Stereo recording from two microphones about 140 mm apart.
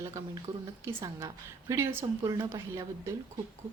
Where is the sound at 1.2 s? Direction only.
20° right (ahead or behind).